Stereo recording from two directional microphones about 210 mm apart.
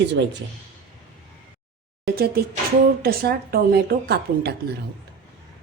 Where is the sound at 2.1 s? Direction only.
45° right (ahead or behind).